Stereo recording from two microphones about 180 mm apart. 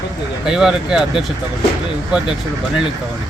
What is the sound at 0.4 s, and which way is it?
Speech, 5° right (ahead or behind).